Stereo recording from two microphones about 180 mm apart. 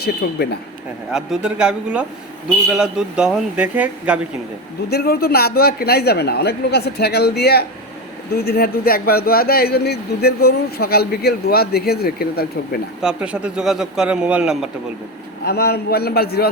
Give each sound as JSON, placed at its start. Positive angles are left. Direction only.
{"t": 0.0, "sound": "a man's voice", "side_deg": 65}
{"t": 1.1, "sound": "a man's voice", "side_deg": -5}
{"t": 4.9, "sound": "a man's voice", "side_deg": 60}
{"t": 13.0, "sound": "a man's voice", "side_deg": -5}
{"t": 15.4, "sound": "a man's voice", "side_deg": 60}